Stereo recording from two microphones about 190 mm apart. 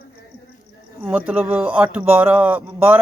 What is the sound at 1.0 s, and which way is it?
Speech, 10° right (ahead or behind).